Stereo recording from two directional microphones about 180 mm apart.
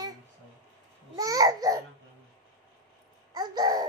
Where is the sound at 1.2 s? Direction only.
20° right (ahead or behind).